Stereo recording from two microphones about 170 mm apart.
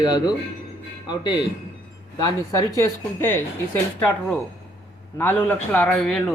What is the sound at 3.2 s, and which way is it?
A man's voice, 10° left (ahead or behind).